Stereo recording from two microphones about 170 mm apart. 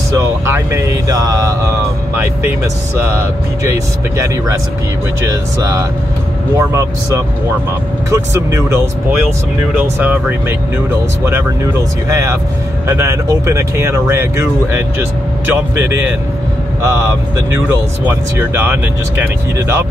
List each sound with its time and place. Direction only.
0.2 s speech: 15° right (ahead or behind)
5.2 s speech: 20° right (ahead or behind)
12.1 s speech: 15° right (ahead or behind)
18.0 s speech: 15° right (ahead or behind)